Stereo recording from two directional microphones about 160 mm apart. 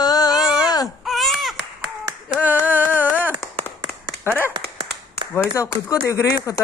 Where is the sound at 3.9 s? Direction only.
15° left (ahead or behind).